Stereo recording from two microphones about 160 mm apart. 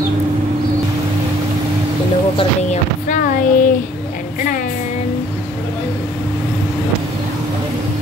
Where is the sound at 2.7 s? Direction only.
50° left (ahead or behind).